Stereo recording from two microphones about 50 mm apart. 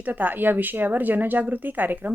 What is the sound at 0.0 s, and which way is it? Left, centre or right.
Speech, right.